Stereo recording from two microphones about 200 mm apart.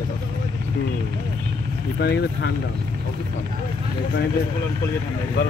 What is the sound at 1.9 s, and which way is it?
Speech, 55° left (ahead or behind).